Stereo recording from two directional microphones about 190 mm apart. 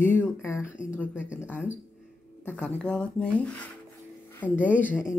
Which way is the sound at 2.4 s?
5° left (ahead or behind).